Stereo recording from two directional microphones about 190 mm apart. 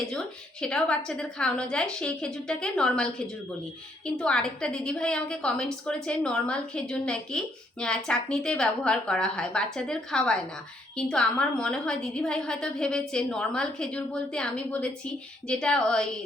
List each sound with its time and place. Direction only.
0.6 s a woman's voice: 5° left (ahead or behind)